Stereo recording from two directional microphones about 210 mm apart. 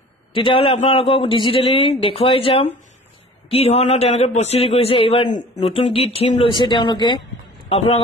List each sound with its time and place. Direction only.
0.3 s a man's voice: 25° left (ahead or behind)